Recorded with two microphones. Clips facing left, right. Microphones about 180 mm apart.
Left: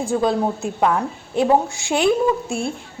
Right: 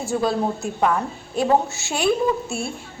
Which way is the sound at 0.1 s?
20° left (ahead or behind).